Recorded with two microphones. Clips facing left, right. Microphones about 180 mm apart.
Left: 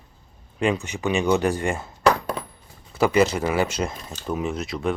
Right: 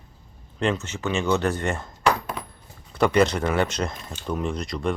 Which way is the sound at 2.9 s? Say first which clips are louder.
Left 1 dB; 5° left (ahead or behind).